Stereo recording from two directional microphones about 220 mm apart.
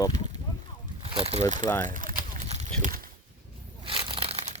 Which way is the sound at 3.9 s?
25° right (ahead or behind).